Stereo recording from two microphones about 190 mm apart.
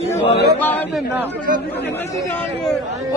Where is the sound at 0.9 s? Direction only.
10° right (ahead or behind).